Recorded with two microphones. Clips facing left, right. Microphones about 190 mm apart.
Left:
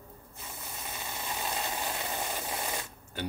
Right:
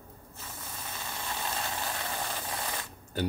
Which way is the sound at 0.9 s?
15° left (ahead or behind).